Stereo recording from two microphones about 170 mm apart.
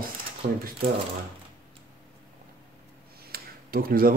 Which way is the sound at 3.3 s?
60° right (ahead or behind).